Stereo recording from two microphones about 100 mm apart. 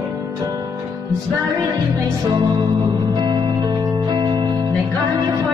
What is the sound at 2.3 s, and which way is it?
Music, 50° right (ahead or behind).